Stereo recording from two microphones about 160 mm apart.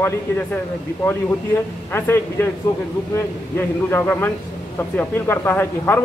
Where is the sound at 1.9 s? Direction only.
15° left (ahead or behind).